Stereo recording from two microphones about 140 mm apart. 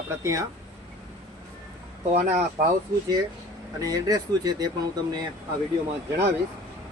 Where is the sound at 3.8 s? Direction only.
25° right (ahead or behind).